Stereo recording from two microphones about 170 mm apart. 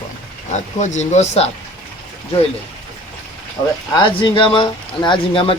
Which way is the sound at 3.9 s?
30° left (ahead or behind).